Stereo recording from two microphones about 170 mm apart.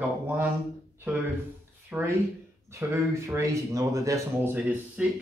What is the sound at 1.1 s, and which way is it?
Speech, 10° right (ahead or behind).